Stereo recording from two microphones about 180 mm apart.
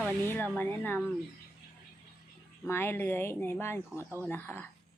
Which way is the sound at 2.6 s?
15° left (ahead or behind).